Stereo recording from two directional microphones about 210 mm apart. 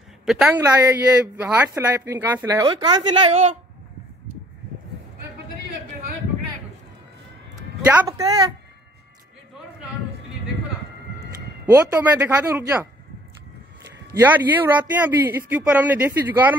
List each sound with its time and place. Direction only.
0.2 s speech: 5° right (ahead or behind); by 3.3 s 25° right (ahead or behind)
7.5 s speech: 10° right (ahead or behind)
11.3 s speech: 15° right (ahead or behind)
14.2 s speech: 10° right (ahead or behind)